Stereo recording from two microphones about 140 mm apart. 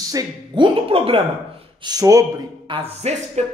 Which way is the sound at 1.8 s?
25° right (ahead or behind).